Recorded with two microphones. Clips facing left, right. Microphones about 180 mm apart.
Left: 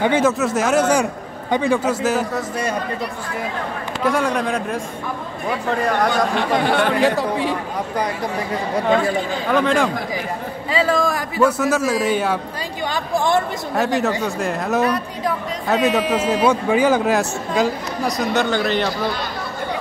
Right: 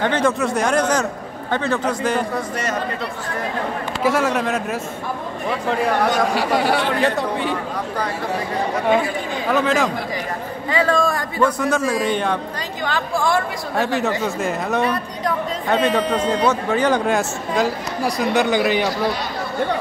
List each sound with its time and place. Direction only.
0.0 s a man's voice: 5° left (ahead or behind)
4.0 s speech: 5° right (ahead or behind)
9.5 s speech: 5° right (ahead or behind)
12.8 s speech: 15° left (ahead or behind)
13.7 s speech: centre (ahead or behind)
18.3 s speech: 15° right (ahead or behind)